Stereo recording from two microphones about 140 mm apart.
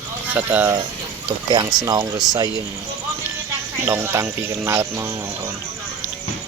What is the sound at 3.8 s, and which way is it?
Speech, 20° right (ahead or behind).